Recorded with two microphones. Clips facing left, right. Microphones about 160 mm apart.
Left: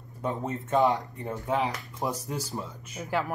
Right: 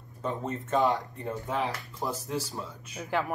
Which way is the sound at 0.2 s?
15° left (ahead or behind).